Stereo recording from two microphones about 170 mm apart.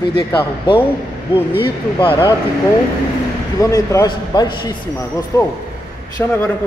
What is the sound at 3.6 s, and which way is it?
A man's voice, 20° left (ahead or behind).